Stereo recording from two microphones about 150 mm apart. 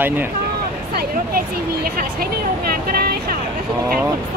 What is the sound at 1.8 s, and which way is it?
Music, 85° right.